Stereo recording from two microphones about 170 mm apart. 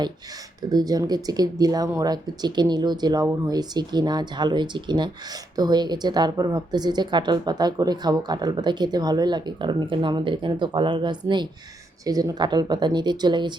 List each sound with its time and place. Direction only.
0.7 s speech: 20° right (ahead or behind)